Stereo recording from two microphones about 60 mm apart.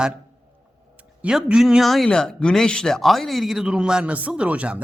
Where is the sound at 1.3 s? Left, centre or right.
Centre.